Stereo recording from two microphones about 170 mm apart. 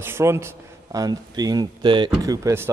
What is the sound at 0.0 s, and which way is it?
A man's voice, 15° right (ahead or behind).